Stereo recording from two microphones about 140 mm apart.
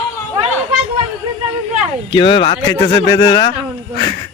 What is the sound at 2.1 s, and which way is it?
Speech, 35° left (ahead or behind).